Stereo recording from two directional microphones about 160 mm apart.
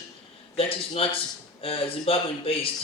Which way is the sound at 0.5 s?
35° left (ahead or behind).